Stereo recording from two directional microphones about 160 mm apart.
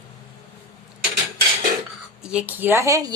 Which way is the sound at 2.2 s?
5° right (ahead or behind).